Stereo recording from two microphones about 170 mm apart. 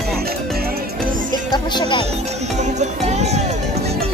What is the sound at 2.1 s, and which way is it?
Speech, 40° right (ahead or behind).